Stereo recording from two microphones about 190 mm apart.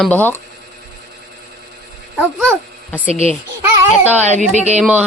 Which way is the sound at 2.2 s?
Centre (ahead or behind).